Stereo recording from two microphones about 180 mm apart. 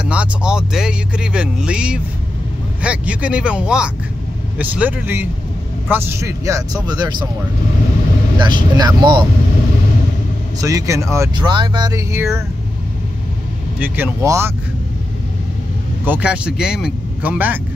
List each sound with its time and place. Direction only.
0.0 s speech: 5° right (ahead or behind)
8.5 s speech: 25° right (ahead or behind)
10.6 s speech: 15° right (ahead or behind)
13.7 s speech: 10° right (ahead or behind)
16.1 s speech: 5° right (ahead or behind)